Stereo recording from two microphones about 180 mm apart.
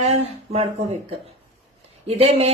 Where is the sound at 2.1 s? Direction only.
35° right (ahead or behind).